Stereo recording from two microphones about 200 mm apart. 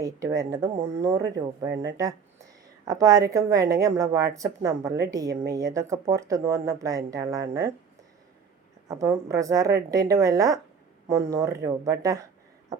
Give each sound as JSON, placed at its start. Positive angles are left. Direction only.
{"t": 0.0, "sound": "a woman's voice", "side_deg": -15}
{"t": 2.8, "sound": "a woman's voice", "side_deg": -15}
{"t": 8.9, "sound": "a woman's voice", "side_deg": -15}